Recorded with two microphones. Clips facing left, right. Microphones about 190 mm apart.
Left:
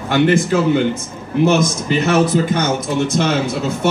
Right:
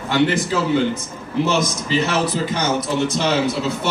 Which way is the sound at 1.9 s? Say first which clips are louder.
Left 6 dB; 50° left (ahead or behind).